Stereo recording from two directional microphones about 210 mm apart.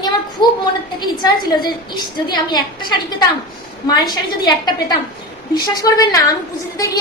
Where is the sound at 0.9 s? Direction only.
20° left (ahead or behind).